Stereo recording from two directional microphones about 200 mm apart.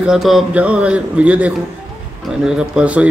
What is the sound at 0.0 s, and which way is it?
A man's voice, centre (ahead or behind).